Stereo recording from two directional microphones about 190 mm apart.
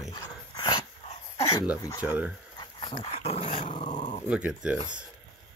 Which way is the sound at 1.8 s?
20° left (ahead or behind).